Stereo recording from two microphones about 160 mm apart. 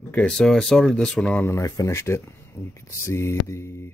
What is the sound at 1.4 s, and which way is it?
Speech, 20° left (ahead or behind).